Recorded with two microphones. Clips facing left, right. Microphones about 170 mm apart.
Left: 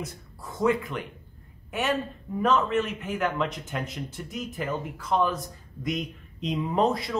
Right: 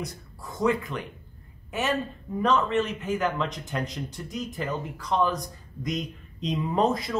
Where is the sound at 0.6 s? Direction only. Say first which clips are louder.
Left 1 dB; centre (ahead or behind).